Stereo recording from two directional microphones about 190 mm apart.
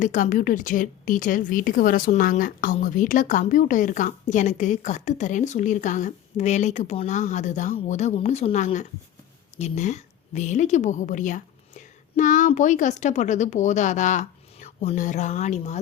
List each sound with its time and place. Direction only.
0.0 s a woman's voice: 40° left (ahead or behind)